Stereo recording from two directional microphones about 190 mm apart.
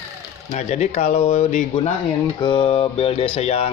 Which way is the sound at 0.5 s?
35° left (ahead or behind).